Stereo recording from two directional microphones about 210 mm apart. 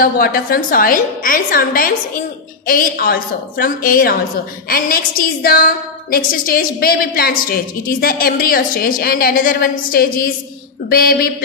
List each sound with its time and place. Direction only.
0.0 s a woman's voice: 45° left (ahead or behind)